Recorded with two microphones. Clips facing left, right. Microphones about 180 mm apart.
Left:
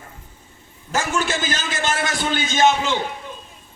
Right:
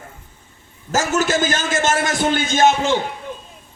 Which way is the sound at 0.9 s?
45° right (ahead or behind).